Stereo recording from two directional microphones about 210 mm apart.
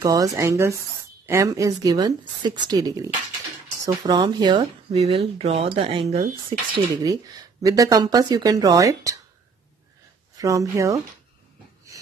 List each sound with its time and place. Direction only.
0.0 s speech: 15° right (ahead or behind)
6.7 s speech: 20° right (ahead or behind)
10.3 s speech: 15° right (ahead or behind)